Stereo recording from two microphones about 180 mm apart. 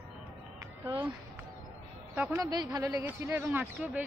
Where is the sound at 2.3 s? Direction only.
20° right (ahead or behind).